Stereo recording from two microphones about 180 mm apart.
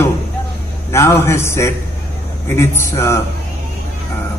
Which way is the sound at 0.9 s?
15° left (ahead or behind).